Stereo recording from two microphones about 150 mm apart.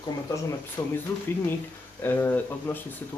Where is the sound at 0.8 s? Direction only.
20° left (ahead or behind).